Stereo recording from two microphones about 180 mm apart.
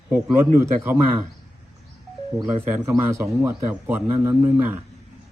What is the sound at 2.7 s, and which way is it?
A man's voice, 15° right (ahead or behind).